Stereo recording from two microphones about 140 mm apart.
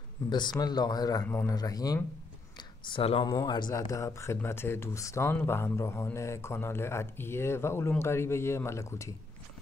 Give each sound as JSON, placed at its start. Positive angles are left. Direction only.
{"t": 0.3, "sound": "speech", "side_deg": 30}
{"t": 2.5, "sound": "a sound", "side_deg": 40}
{"t": 3.3, "sound": "speech", "side_deg": 30}